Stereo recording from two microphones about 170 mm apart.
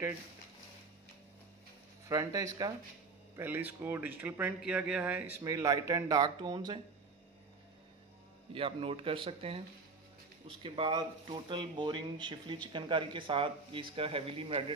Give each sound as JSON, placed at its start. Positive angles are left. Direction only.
{"t": 2.0, "sound": "speech", "side_deg": -20}
{"t": 3.3, "sound": "speech", "side_deg": -10}
{"t": 8.5, "sound": "speech", "side_deg": -30}
{"t": 10.6, "sound": "speech", "side_deg": -30}